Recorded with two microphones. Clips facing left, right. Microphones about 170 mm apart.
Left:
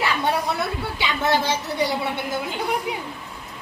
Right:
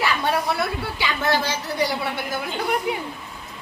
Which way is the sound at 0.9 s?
20° left (ahead or behind).